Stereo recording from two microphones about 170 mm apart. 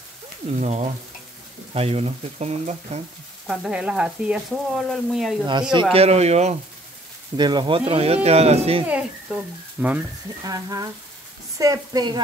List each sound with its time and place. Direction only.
0.6 s speech: 40° right (ahead or behind)
3.4 s speech: 5° right (ahead or behind)
5.5 s speech: 25° right (ahead or behind)
5.9 s speech: 40° right (ahead or behind)
7.3 s speech: 25° right (ahead or behind)
8.8 s a child's voice: 10° right (ahead or behind)
10.4 s speech: 20° right (ahead or behind)